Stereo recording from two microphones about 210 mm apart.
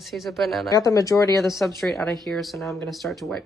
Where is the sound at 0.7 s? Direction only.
15° left (ahead or behind).